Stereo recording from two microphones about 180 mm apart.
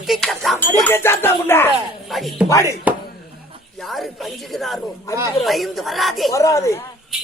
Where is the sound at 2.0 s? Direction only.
Centre (ahead or behind).